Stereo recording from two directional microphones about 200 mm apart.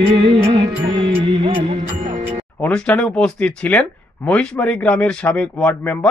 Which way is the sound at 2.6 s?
5° left (ahead or behind).